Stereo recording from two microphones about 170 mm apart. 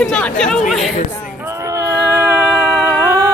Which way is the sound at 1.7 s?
15° right (ahead or behind).